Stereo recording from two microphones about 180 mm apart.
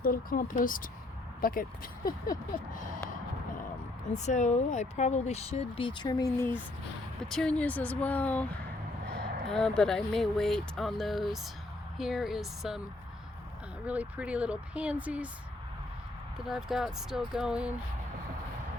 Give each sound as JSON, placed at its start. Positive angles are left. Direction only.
{"t": 0.0, "sound": "speech", "side_deg": 50}
{"t": 4.1, "sound": "speech", "side_deg": 40}
{"t": 7.2, "sound": "speech", "side_deg": 0}
{"t": 9.5, "sound": "speech", "side_deg": 5}
{"t": 13.8, "sound": "speech", "side_deg": -10}
{"t": 16.5, "sound": "speech", "side_deg": 0}